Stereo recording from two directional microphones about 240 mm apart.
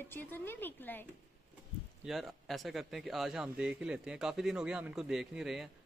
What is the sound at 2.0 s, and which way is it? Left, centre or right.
Speech, centre.